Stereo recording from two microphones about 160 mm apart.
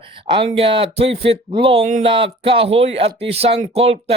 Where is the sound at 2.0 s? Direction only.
35° right (ahead or behind).